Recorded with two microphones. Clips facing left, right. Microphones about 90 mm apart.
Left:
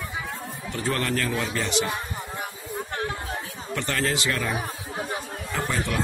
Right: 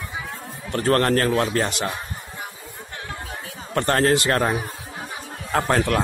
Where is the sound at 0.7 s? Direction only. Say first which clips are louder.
Right 8 dB; 55° right (ahead or behind).